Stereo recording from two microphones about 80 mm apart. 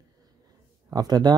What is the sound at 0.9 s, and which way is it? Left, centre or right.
Speech, right.